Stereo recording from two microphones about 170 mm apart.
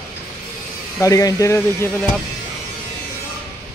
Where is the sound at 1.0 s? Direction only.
20° left (ahead or behind).